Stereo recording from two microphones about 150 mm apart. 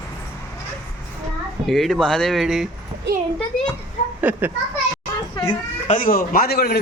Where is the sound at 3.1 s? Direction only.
90° right.